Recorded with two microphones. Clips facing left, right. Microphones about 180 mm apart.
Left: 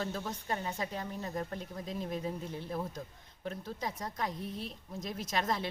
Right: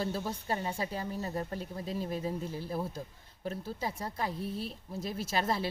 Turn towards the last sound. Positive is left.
turn(degrees=-5)  # may be behind; listen again after turning